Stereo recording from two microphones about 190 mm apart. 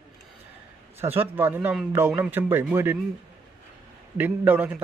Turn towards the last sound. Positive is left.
turn(degrees=-10)  # may be behind; listen again after turning